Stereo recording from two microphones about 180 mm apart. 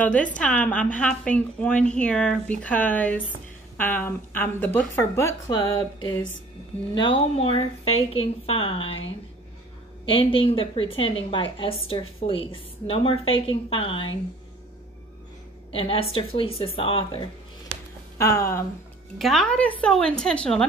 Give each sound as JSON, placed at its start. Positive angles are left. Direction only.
{"t": 0.0, "sound": "a woman's voice", "side_deg": 10}
{"t": 10.0, "sound": "a woman's voice", "side_deg": 30}
{"t": 15.7, "sound": "speech", "side_deg": 30}
{"t": 18.1, "sound": "speech", "side_deg": 15}
{"t": 19.1, "sound": "a woman's voice", "side_deg": 0}